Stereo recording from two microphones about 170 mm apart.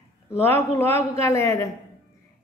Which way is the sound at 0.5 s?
15° left (ahead or behind).